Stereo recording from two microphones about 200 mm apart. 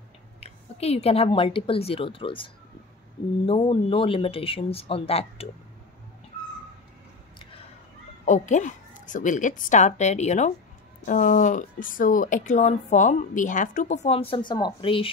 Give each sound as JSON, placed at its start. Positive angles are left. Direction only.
{"t": 0.4, "sound": "a woman's voice", "side_deg": 30}
{"t": 8.3, "sound": "speech", "side_deg": 35}
{"t": 14.3, "sound": "speech", "side_deg": 20}